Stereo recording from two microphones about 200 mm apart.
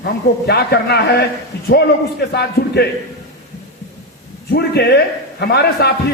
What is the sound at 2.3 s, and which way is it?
Speech, 55° left (ahead or behind).